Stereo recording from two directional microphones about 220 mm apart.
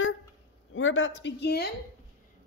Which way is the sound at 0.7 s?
60° left (ahead or behind).